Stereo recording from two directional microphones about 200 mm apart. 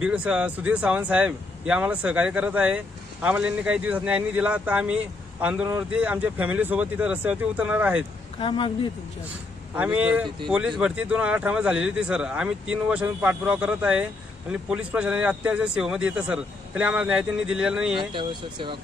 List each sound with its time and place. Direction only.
0.0 s speech: 5° right (ahead or behind)
8.4 s speech: 25° left (ahead or behind)
9.8 s a man's voice: 5° right (ahead or behind)
17.9 s speech: 25° right (ahead or behind)